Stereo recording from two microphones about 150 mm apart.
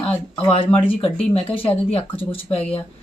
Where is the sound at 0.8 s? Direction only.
40° left (ahead or behind).